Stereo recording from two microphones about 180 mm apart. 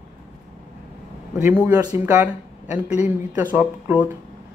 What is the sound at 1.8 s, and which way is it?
Speech, 15° right (ahead or behind).